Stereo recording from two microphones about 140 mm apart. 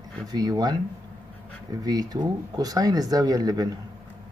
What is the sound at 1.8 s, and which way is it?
Speech, 25° right (ahead or behind).